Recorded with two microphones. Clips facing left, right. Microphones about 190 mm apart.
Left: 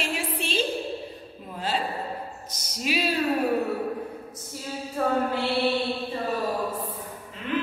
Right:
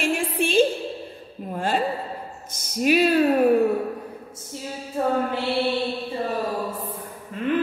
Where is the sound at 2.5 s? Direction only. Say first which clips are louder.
Right 9 dB; 50° right (ahead or behind).